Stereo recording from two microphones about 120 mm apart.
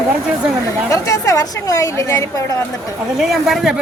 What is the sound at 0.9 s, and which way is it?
A woman's voice, 30° left (ahead or behind).